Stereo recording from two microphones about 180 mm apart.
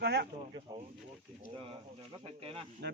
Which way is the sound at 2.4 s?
30° right (ahead or behind).